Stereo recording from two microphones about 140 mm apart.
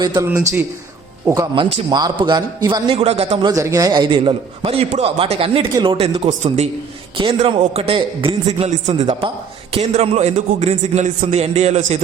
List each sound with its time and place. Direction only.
0.0 s a man's voice: 30° right (ahead or behind)
0.3 s a man's voice: 15° right (ahead or behind)
1.5 s a man's voice: 35° right (ahead or behind)
2.9 s a man's voice: 45° right (ahead or behind)
3.4 s a man's voice: 25° right (ahead or behind); by 6.7 s 50° right (ahead or behind)
7.4 s a man's voice: 40° right (ahead or behind)